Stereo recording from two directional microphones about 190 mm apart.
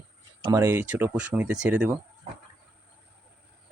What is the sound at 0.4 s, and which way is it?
Speech, 15° right (ahead or behind).